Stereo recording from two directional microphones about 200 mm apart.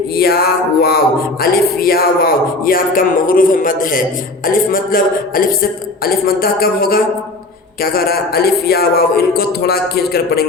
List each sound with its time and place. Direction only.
0.2 s music: 50° left (ahead or behind)